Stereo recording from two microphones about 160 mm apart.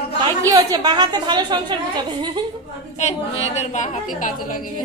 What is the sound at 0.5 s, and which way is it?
A woman's voice, 25° right (ahead or behind).